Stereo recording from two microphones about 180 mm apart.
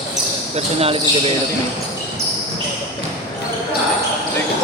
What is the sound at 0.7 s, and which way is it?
Speech, 35° right (ahead or behind).